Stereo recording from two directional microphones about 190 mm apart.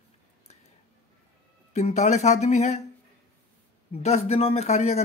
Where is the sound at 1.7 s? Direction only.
35° left (ahead or behind).